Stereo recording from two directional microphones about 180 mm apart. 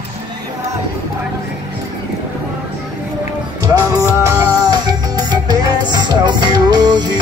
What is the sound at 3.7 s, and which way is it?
Music, 20° right (ahead or behind).